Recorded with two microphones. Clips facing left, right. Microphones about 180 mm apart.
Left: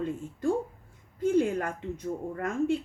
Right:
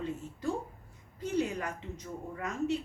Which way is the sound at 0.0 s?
50° left (ahead or behind).